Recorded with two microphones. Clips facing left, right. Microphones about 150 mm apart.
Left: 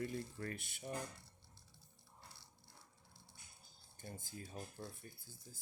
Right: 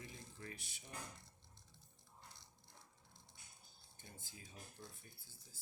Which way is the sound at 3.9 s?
45° left (ahead or behind).